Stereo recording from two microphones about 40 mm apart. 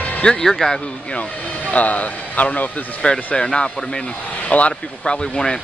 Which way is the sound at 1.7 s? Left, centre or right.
Left.